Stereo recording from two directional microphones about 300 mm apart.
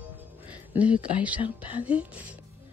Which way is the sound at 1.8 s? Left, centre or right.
Centre.